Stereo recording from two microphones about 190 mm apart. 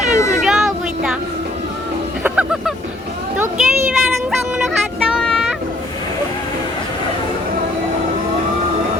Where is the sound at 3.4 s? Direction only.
5° right (ahead or behind).